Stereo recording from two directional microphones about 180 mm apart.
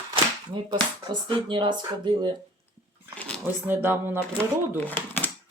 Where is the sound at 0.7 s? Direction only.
25° right (ahead or behind).